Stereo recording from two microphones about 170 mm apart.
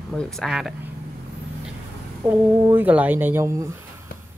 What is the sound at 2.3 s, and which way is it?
Speech, 10° right (ahead or behind).